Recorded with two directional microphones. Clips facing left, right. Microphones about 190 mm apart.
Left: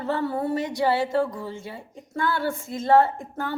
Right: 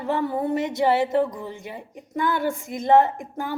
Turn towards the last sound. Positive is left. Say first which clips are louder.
# right 1 dB
turn(degrees=-15)  # may be behind; listen again after turning